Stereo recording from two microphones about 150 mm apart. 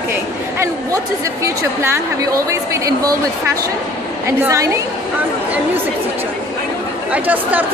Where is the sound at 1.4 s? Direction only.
20° right (ahead or behind).